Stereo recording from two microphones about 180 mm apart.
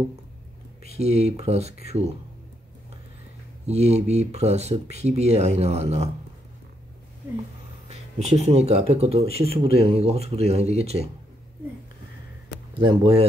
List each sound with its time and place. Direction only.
0.8 s speech: 35° right (ahead or behind)
3.6 s speech: 35° right (ahead or behind)
7.9 s speech: 35° right (ahead or behind)
12.7 s speech: 30° right (ahead or behind)